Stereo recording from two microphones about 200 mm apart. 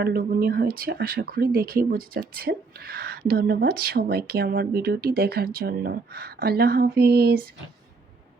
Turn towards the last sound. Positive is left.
turn(degrees=-50)  # may be behind; listen again after turning